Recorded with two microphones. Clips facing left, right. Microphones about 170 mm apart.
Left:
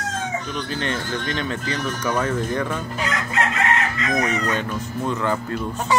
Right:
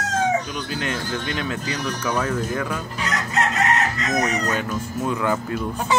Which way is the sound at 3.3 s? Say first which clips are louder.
Right 2 dB; 40° right (ahead or behind).